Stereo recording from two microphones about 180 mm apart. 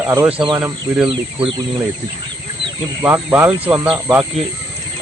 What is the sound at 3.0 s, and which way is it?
Cricket, 10° right (ahead or behind).